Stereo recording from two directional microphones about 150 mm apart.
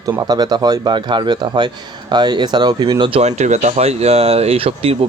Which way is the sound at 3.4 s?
45° right (ahead or behind).